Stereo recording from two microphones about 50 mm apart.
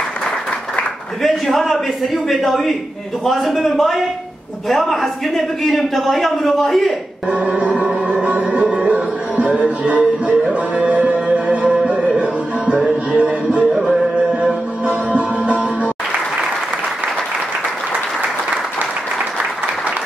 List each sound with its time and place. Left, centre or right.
1.2 s a man's voice: centre
7.2 s music: right
15.0 s music: right